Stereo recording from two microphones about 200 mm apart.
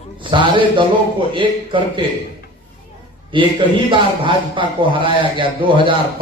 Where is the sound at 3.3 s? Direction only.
25° right (ahead or behind).